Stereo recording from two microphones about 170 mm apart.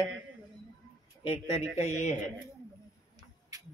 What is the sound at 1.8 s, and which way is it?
Speech, 45° left (ahead or behind).